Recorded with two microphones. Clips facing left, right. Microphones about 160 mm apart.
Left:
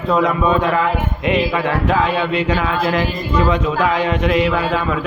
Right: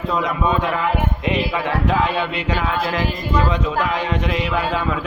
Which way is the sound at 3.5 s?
60° left (ahead or behind).